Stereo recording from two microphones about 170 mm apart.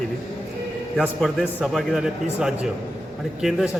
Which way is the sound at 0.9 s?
Centre (ahead or behind).